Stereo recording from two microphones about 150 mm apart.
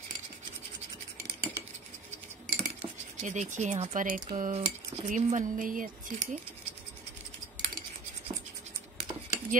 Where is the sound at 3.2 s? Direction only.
55° right (ahead or behind).